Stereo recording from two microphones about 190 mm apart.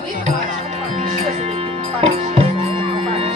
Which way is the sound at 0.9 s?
35° right (ahead or behind).